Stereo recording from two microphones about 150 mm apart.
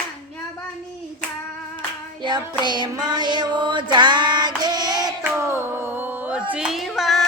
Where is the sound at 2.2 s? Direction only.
30° right (ahead or behind).